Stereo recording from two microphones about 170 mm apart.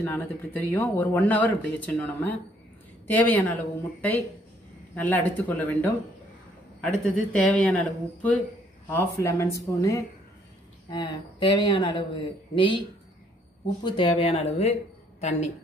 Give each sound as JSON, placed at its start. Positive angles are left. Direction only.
{"t": 0.0, "sound": "speech", "side_deg": 10}
{"t": 4.9, "sound": "a woman's voice", "side_deg": 10}
{"t": 13.8, "sound": "speech", "side_deg": 30}